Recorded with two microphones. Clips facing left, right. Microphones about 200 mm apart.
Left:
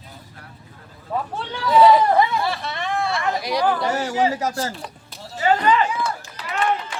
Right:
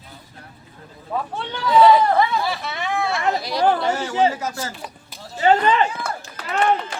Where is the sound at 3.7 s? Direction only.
40° left (ahead or behind).